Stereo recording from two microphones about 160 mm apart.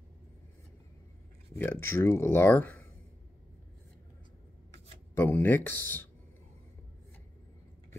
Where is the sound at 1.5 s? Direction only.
15° left (ahead or behind).